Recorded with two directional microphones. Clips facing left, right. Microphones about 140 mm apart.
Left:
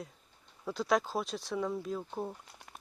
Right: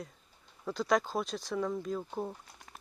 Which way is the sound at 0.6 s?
Centre (ahead or behind).